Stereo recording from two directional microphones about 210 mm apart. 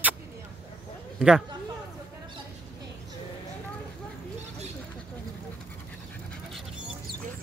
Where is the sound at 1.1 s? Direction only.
5° right (ahead or behind).